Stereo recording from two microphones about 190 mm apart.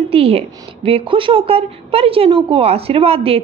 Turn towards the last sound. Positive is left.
turn(degrees=-30)  # may be behind; listen again after turning